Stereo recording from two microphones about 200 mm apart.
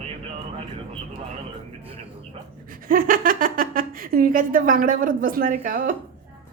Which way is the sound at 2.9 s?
45° right (ahead or behind).